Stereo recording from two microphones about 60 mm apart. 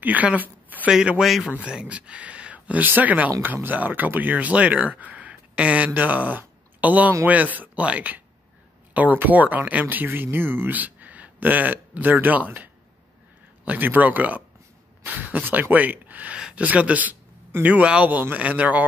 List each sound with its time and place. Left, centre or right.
0.0 s a sound: right
0.8 s a man's voice: centre
1.2 s a man's voice: centre
1.7 s speech: centre
13.7 s speech: right